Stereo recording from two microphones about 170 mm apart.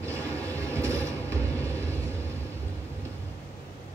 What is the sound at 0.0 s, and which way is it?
Vehicle, 15° right (ahead or behind).